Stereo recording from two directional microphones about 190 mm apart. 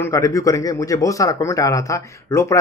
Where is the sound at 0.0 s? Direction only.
15° left (ahead or behind).